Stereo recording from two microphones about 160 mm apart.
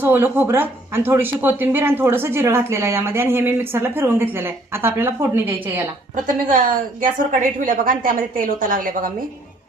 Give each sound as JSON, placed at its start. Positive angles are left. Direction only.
{"t": 0.0, "sound": "speech", "side_deg": -15}
{"t": 6.2, "sound": "a woman's voice", "side_deg": -60}